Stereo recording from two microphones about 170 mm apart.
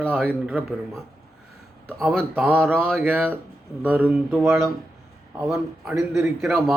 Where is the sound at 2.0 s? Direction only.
10° right (ahead or behind).